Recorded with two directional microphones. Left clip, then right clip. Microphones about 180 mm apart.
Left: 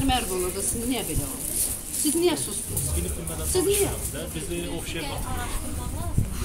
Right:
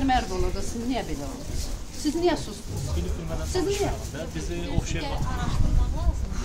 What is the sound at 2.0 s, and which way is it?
Speech, 20° right (ahead or behind).